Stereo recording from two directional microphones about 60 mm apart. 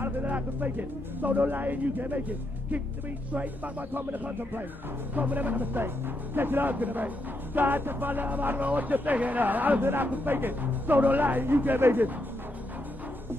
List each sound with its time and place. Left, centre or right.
0.0 s speech: right